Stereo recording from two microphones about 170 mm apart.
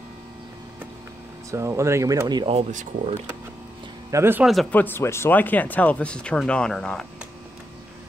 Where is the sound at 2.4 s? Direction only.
40° right (ahead or behind).